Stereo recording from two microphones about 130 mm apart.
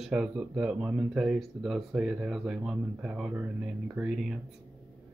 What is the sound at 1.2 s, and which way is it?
Speech, centre (ahead or behind).